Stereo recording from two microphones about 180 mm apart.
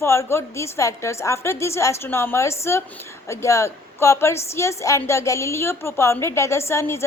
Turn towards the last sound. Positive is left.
turn(degrees=15)  # may be behind; listen again after turning